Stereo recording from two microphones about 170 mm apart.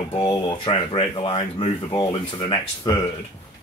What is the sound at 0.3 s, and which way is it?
Speech, 30° left (ahead or behind).